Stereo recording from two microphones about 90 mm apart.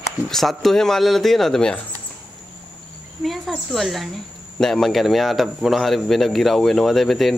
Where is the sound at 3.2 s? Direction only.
Centre (ahead or behind).